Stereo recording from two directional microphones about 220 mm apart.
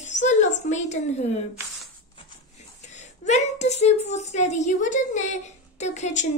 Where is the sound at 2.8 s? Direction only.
30° left (ahead or behind).